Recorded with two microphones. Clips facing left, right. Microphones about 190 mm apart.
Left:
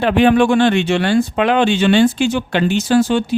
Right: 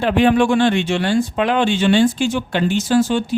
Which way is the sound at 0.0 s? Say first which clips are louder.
Left 2 dB; 65° left (ahead or behind).